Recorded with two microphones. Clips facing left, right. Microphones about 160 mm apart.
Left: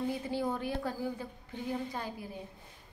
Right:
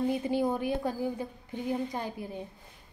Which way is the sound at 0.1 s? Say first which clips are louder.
Right 5 dB; 15° right (ahead or behind).